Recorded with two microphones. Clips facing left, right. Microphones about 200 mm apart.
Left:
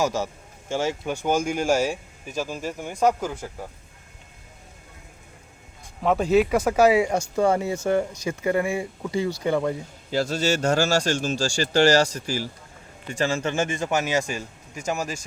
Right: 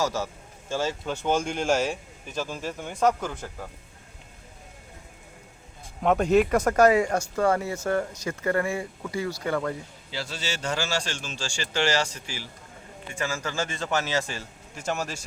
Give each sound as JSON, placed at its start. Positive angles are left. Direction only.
{"t": 0.0, "sound": "speech", "side_deg": 15}
{"t": 6.0, "sound": "speech", "side_deg": 0}
{"t": 10.1, "sound": "speech", "side_deg": 45}
{"t": 13.1, "sound": "speech", "side_deg": 30}